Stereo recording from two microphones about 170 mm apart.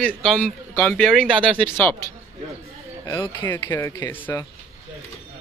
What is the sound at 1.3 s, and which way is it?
Speech, 30° right (ahead or behind).